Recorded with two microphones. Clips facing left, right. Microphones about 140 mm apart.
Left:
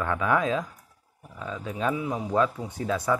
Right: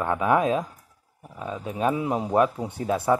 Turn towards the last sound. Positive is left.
turn(degrees=-30)  # may be behind; listen again after turning